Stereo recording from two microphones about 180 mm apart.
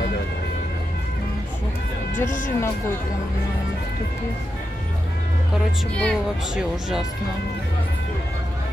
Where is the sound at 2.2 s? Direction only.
45° left (ahead or behind).